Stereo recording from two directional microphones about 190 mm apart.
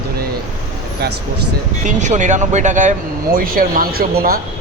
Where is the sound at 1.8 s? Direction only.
40° right (ahead or behind).